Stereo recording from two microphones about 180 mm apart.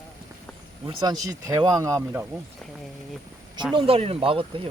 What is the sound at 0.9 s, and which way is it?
Speech, 25° right (ahead or behind).